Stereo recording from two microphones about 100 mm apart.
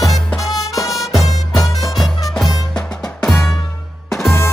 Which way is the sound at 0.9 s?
Centre (ahead or behind).